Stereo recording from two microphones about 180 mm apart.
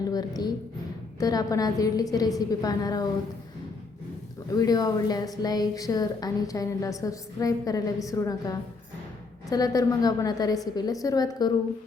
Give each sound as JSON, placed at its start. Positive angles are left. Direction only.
{"t": 0.1, "sound": "a woman's voice", "side_deg": 20}
{"t": 4.5, "sound": "a woman's voice", "side_deg": 20}